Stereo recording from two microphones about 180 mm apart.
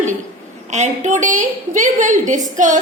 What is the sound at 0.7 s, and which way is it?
A woman's voice, 40° right (ahead or behind).